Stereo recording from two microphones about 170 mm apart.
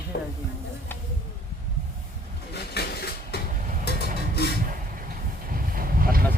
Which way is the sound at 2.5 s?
70° left (ahead or behind).